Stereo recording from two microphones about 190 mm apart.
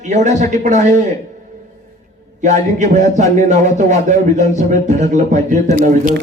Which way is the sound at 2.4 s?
40° right (ahead or behind).